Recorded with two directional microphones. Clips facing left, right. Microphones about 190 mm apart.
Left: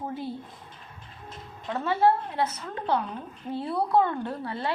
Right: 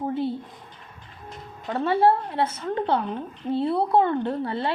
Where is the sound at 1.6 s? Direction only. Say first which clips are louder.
Right 3 dB; 30° right (ahead or behind).